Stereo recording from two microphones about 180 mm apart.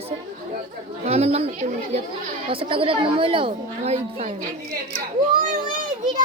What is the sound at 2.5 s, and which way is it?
A woman's voice, 30° right (ahead or behind).